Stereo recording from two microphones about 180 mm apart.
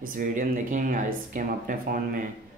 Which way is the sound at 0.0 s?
50° right (ahead or behind).